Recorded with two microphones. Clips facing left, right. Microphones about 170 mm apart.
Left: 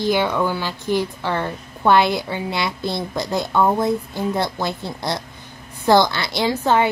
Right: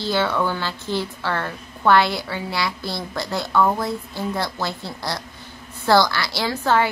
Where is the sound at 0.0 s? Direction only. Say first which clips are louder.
Left 3 dB; 15° left (ahead or behind).